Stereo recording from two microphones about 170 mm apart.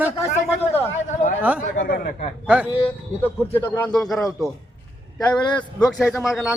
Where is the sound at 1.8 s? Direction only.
60° left (ahead or behind).